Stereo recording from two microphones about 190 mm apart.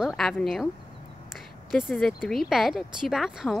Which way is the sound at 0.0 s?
Centre (ahead or behind).